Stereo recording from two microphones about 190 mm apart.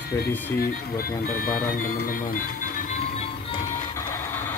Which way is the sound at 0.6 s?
50° left (ahead or behind).